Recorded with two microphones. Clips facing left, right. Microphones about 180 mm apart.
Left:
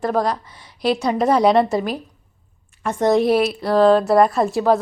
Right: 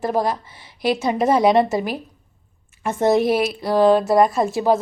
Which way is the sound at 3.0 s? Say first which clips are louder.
Left 1 dB; 5° right (ahead or behind).